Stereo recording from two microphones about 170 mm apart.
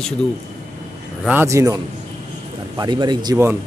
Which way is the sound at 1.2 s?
10° right (ahead or behind).